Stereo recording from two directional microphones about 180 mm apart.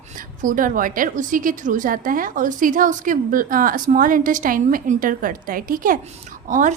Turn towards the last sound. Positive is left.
turn(degrees=-45)  # may be behind; listen again after turning